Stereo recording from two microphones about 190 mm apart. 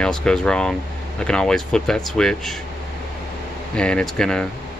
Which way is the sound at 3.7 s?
5° left (ahead or behind).